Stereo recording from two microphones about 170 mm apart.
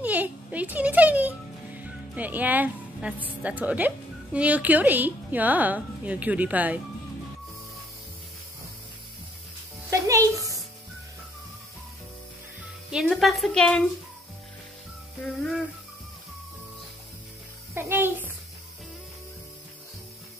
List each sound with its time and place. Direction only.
0.0 s speech: 10° right (ahead or behind)
9.8 s music: 20° right (ahead or behind)
12.9 s a woman's voice: centre (ahead or behind)
17.7 s a child's voice: 15° right (ahead or behind)